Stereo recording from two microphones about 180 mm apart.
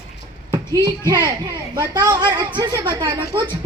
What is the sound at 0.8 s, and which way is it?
A child's voice, 25° right (ahead or behind).